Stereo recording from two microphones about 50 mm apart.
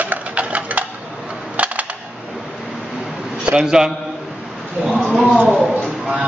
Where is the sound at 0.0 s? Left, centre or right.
Right.